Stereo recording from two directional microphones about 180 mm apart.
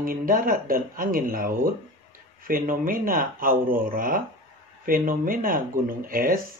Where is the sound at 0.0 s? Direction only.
50° right (ahead or behind).